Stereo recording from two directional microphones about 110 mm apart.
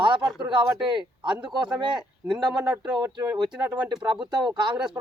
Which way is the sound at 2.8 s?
40° right (ahead or behind).